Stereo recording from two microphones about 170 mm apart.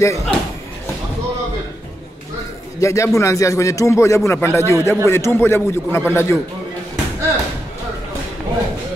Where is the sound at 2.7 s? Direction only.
15° left (ahead or behind).